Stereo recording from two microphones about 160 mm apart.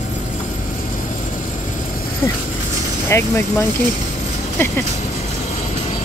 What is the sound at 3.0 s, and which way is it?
Speech, 15° left (ahead or behind).